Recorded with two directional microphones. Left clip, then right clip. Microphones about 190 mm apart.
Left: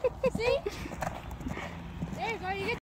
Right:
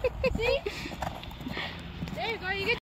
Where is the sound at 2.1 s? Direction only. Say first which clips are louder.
Right 2 dB; 80° left.